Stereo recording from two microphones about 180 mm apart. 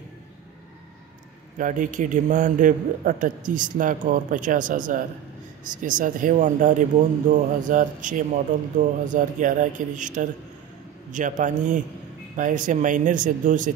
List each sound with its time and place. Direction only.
1.6 s a man's voice: 45° right (ahead or behind)